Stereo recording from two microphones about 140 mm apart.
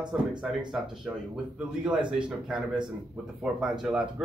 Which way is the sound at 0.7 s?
5° right (ahead or behind).